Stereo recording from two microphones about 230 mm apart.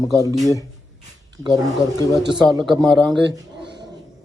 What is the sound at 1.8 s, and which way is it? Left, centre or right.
Speech, centre.